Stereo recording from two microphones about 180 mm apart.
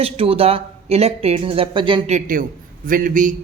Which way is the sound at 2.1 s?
50° right (ahead or behind).